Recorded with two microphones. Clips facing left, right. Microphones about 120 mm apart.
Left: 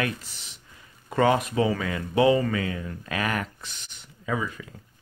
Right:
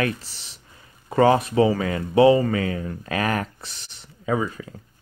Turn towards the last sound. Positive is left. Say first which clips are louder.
# right 5 dB
turn(degrees=-35)  # may be behind; listen again after turning